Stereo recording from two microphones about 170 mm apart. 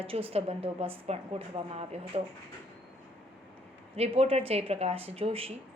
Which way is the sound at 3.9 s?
35° right (ahead or behind).